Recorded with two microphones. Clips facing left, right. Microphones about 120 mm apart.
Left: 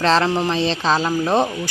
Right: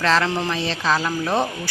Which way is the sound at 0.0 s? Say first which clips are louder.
Left 3 dB; 25° left (ahead or behind).